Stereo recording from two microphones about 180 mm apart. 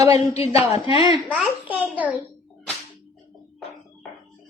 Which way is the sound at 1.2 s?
Centre (ahead or behind).